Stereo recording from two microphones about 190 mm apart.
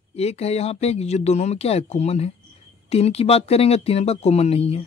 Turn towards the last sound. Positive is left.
turn(degrees=30)  # may be behind; listen again after turning